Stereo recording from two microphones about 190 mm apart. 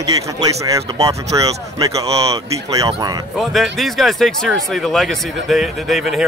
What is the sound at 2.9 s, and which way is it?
Speech, 20° right (ahead or behind).